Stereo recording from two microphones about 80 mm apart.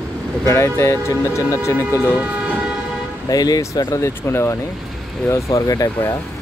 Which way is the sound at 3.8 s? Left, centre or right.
Left.